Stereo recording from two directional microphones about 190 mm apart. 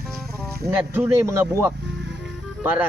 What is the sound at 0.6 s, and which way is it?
Speech, 15° right (ahead or behind).